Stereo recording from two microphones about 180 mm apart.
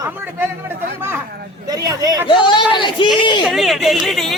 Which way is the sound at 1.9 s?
20° right (ahead or behind).